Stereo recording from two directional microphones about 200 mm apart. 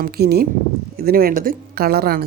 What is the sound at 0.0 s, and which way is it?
Speech, 50° right (ahead or behind).